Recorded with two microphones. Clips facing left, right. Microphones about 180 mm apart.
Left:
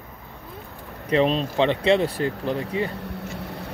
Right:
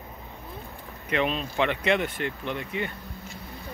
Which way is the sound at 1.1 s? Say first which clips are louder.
Left 7 dB; 35° left (ahead or behind).